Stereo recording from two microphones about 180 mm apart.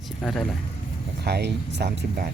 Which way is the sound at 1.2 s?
65° right (ahead or behind).